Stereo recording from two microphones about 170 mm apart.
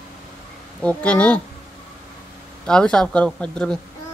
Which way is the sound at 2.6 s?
5° left (ahead or behind).